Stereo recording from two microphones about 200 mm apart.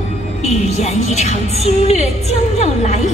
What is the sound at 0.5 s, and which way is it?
A woman's voice, 35° left (ahead or behind).